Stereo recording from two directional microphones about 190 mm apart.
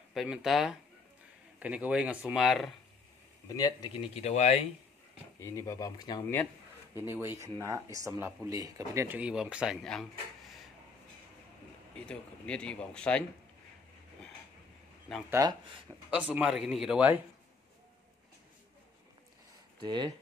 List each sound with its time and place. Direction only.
0.1 s speech: centre (ahead or behind)
3.4 s speech: 20° left (ahead or behind); by 4.6 s 35° left (ahead or behind)
5.4 s speech: 15° left (ahead or behind)
7.0 s speech: 10° right (ahead or behind)
12.1 s speech: 5° left (ahead or behind)
15.2 s speech: 15° right (ahead or behind)
19.8 s speech: 25° right (ahead or behind)